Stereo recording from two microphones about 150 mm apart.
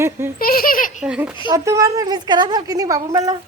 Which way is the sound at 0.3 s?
75° left (ahead or behind).